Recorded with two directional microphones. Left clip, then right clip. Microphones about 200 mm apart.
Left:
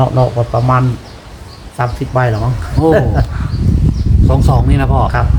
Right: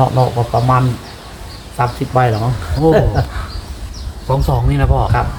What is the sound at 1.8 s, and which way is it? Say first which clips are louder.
Speech: right 1 dB; 5° left (ahead or behind).